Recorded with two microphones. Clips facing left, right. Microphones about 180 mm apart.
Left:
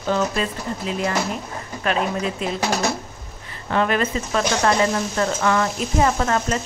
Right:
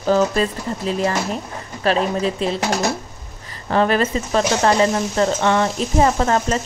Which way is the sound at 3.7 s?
35° right (ahead or behind).